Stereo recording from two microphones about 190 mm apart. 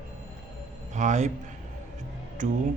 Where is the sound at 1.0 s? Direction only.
40° right (ahead or behind).